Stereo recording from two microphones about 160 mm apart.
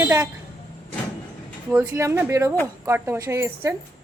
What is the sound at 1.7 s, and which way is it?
A woman's voice, 15° right (ahead or behind).